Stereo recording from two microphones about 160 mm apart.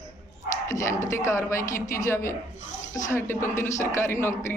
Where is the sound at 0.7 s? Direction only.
20° left (ahead or behind).